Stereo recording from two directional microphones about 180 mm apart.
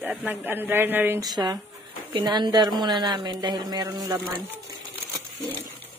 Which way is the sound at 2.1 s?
25° right (ahead or behind).